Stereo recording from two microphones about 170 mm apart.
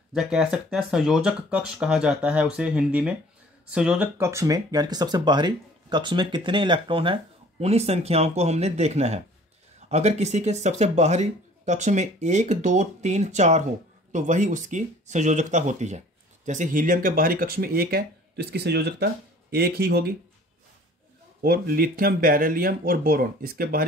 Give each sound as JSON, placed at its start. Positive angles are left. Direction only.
{"t": 0.1, "sound": "speech", "side_deg": -5}
{"t": 4.3, "sound": "speech", "side_deg": -20}
{"t": 21.4, "sound": "speech", "side_deg": -60}